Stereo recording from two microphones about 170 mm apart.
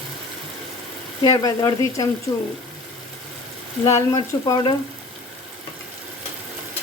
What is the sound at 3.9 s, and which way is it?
Speech, 20° left (ahead or behind).